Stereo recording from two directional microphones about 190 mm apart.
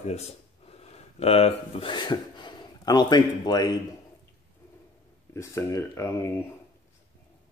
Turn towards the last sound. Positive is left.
turn(degrees=15)  # may be behind; listen again after turning